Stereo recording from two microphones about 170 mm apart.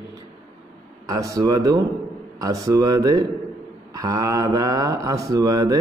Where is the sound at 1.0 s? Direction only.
20° right (ahead or behind).